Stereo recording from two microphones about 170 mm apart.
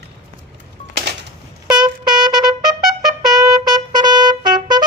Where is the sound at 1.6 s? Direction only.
25° right (ahead or behind).